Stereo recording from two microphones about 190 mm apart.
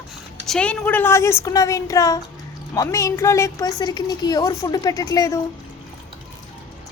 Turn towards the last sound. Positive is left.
turn(degrees=20)  # may be behind; listen again after turning